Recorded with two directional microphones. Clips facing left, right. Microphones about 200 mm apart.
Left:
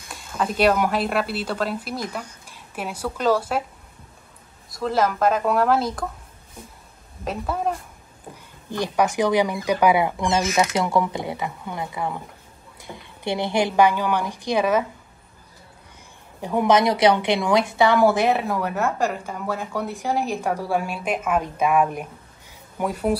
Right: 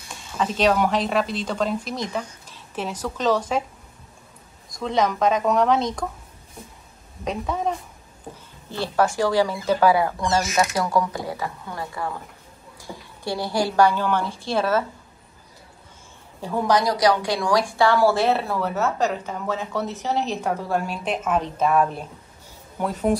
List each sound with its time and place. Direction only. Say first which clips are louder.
0.1 s a woman's voice: even; 5° left (ahead or behind)
4.6 s speech: even; 5° left (ahead or behind)
7.2 s speech: even; 5° left (ahead or behind)
8.6 s a woman's voice: even; 15° left (ahead or behind)
16.3 s a woman's voice: left 3 dB; 15° left (ahead or behind)